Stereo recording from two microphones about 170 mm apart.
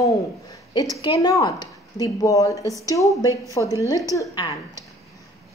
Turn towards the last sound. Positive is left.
turn(degrees=25)  # may be behind; listen again after turning